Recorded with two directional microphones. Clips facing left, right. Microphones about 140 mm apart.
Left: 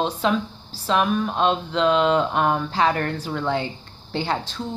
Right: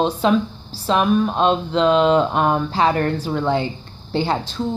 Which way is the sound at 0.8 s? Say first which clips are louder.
Right 4 dB; 30° right (ahead or behind).